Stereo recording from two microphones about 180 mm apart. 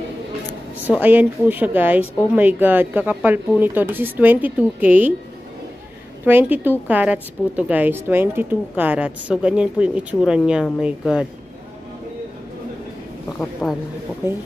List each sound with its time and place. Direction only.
0.8 s a woman's voice: 10° right (ahead or behind)
6.2 s a woman's voice: 10° right (ahead or behind)
13.4 s speech: 5° left (ahead or behind)